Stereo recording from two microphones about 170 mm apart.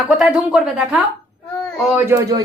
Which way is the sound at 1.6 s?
5° left (ahead or behind).